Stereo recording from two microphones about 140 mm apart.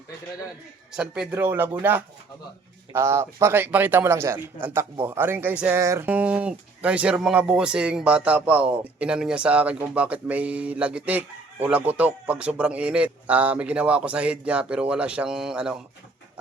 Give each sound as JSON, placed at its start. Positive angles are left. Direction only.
{"t": 0.9, "sound": "speech", "side_deg": -5}